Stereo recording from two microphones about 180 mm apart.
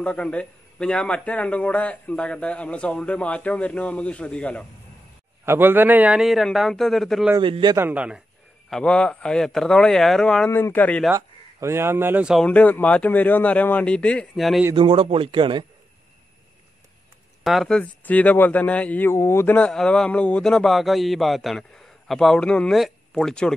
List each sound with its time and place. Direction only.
0.0 s a man's voice: 5° left (ahead or behind)
5.4 s speech: 10° right (ahead or behind)
7.4 s speech: 30° right (ahead or behind)
7.7 s a man's voice: 10° right (ahead or behind)
8.6 s speech: 5° left (ahead or behind)
11.1 s speech: 15° right (ahead or behind)
12.4 s a man's voice: 10° left (ahead or behind)
14.8 s speech: 30° right (ahead or behind)
17.4 s speech: centre (ahead or behind)